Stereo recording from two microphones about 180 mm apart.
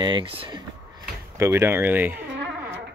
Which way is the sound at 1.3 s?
15° right (ahead or behind).